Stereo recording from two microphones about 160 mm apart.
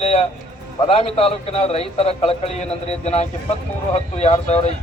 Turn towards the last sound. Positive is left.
turn(degrees=40)  # may be behind; listen again after turning